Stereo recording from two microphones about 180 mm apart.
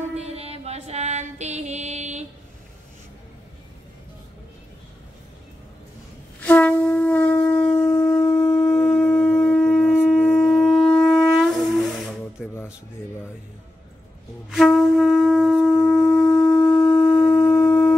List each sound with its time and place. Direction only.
0.1 s music: 35° right (ahead or behind)
6.4 s shofar: 10° left (ahead or behind)
14.5 s wind instrument: centre (ahead or behind)